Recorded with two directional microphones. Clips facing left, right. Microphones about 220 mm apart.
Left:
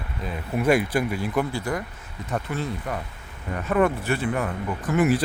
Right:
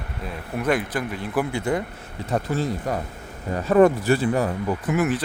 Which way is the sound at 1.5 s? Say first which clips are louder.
Right 4 dB; 25° right (ahead or behind).